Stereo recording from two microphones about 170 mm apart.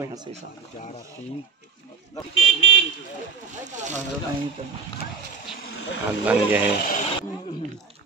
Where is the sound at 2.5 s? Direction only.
90° left.